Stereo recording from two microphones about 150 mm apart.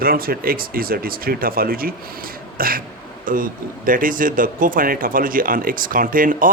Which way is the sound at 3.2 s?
65° right (ahead or behind).